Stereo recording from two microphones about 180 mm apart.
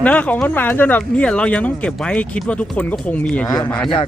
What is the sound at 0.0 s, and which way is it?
Speech, 10° left (ahead or behind).